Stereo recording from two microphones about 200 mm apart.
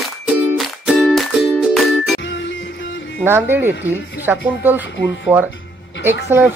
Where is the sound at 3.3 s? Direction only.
10° right (ahead or behind).